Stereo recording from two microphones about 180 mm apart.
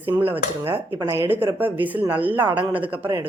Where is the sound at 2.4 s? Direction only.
25° right (ahead or behind).